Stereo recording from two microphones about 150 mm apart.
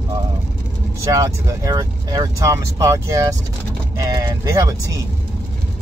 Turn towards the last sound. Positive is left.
turn(degrees=-25)  # may be behind; listen again after turning